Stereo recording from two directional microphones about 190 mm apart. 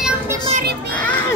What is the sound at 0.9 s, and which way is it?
Speech, 10° left (ahead or behind).